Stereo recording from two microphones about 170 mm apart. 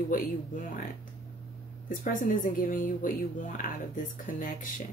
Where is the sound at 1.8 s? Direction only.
55° left (ahead or behind).